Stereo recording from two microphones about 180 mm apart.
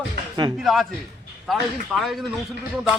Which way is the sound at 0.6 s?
Centre (ahead or behind).